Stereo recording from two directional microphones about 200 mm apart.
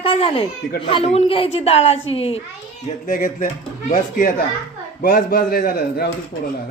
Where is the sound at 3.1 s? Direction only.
45° left (ahead or behind).